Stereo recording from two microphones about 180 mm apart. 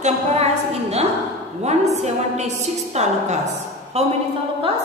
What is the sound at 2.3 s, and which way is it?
A woman's voice, 40° right (ahead or behind).